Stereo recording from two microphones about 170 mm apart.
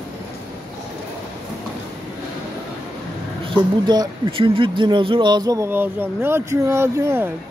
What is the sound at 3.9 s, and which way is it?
Speech, 25° right (ahead or behind).